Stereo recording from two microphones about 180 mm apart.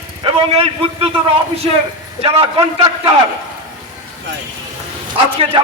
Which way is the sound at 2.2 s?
30° right (ahead or behind).